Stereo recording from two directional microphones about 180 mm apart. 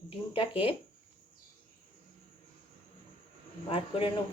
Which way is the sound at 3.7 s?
30° left (ahead or behind).